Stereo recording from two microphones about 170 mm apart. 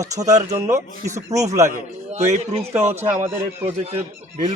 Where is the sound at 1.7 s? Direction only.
40° right (ahead or behind).